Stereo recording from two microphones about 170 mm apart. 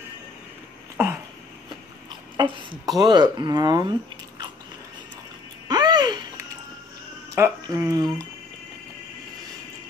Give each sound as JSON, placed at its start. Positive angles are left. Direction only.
{"t": 2.3, "sound": "speech", "side_deg": -25}
{"t": 5.7, "sound": "a sound", "side_deg": -25}
{"t": 7.3, "sound": "speech", "side_deg": -15}